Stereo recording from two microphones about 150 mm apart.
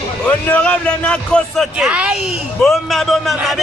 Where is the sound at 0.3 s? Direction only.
10° left (ahead or behind).